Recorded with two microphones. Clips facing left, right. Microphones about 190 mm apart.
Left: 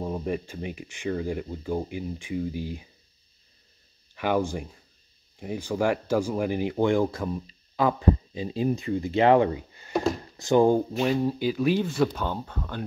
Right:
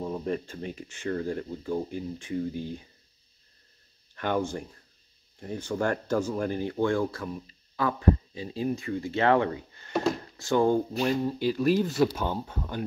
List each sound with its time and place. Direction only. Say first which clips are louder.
0.0 s speech: left 1 dB; 15° left (ahead or behind)
4.1 s speech: left 3 dB; 10° left (ahead or behind)
11.0 s speech: left 2 dB; 5° left (ahead or behind)